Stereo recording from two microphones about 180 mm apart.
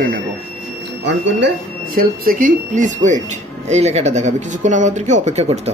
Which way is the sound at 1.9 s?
50° right (ahead or behind).